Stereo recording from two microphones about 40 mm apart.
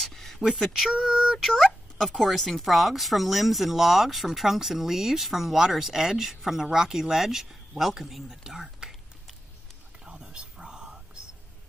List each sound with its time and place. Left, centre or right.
0.0 s a sound: centre
0.9 s speech: centre
8.5 s speech: centre
10.0 s whispering: centre